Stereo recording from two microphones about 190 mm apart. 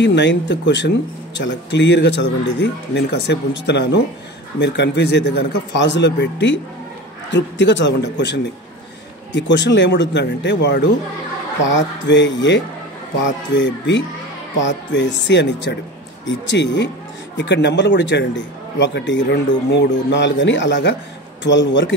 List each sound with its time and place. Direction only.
0.0 s a man's voice: 70° left (ahead or behind)